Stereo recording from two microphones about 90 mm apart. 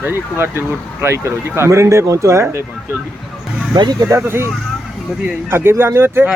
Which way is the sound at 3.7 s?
50° right (ahead or behind).